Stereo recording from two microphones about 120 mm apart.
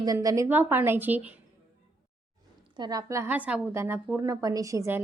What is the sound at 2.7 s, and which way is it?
Speech, 35° right (ahead or behind).